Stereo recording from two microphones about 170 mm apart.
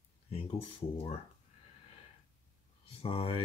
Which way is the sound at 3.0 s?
35° left (ahead or behind).